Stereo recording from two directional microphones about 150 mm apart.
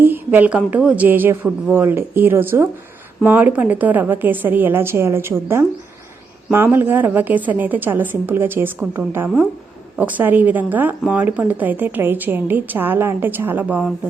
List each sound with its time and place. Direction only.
0.0 s a woman's voice: 10° right (ahead or behind)